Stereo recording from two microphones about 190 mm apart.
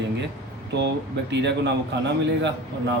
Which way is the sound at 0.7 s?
65° right (ahead or behind).